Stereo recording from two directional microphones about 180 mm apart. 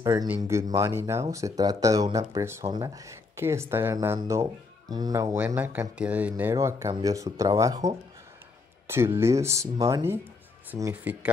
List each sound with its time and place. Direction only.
0.0 s speech: 15° right (ahead or behind)
5.4 s speech: 10° right (ahead or behind)
8.8 s speech: 15° right (ahead or behind)